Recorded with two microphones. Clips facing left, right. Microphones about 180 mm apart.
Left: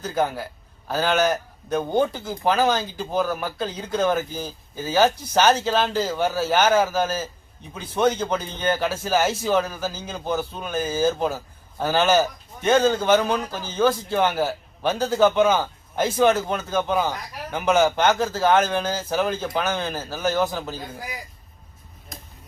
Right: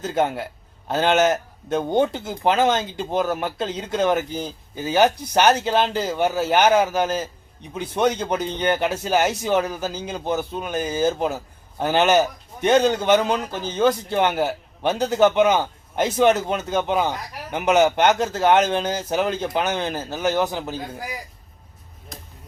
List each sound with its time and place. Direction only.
0.0 s a man's voice: 20° right (ahead or behind)